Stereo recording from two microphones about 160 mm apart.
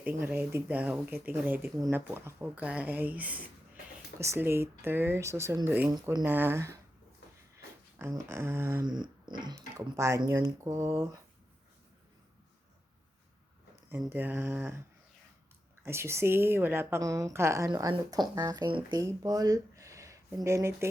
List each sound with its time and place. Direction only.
0.0 s a woman's voice: 10° right (ahead or behind)
5.9 s speech: 25° right (ahead or behind)
6.2 s a woman's voice: 15° right (ahead or behind)
7.9 s a woman's voice: 15° right (ahead or behind)
8.8 s speech: 25° right (ahead or behind)
14.1 s a woman's voice: 10° right (ahead or behind)
15.8 s a woman's voice: 15° right (ahead or behind)